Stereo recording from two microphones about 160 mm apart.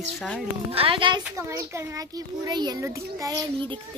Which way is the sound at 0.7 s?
35° right (ahead or behind).